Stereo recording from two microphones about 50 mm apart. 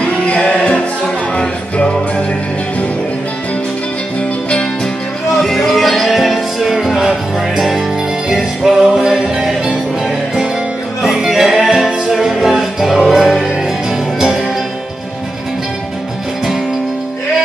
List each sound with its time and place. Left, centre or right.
0.0 s music: left
5.3 s music: centre
11.0 s music: centre